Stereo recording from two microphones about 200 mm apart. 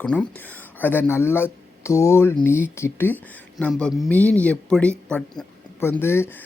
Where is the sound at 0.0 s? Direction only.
5° left (ahead or behind).